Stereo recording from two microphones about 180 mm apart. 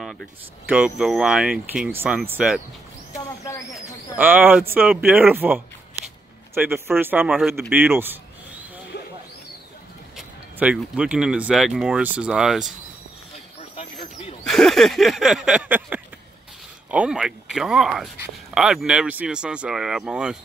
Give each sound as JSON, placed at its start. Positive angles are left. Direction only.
{"t": 0.0, "sound": "speech", "side_deg": 0}
{"t": 3.3, "sound": "owl", "side_deg": 15}
{"t": 4.2, "sound": "speech", "side_deg": -10}
{"t": 8.9, "sound": "a sound", "side_deg": 65}
{"t": 10.1, "sound": "speech", "side_deg": -5}
{"t": 14.4, "sound": "a sound", "side_deg": 0}
{"t": 16.9, "sound": "speech", "side_deg": -5}